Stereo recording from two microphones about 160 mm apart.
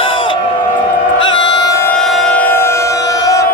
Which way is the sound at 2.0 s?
5° left (ahead or behind).